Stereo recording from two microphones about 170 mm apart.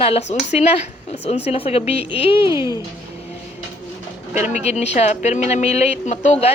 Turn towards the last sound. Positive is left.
turn(degrees=40)  # may be behind; listen again after turning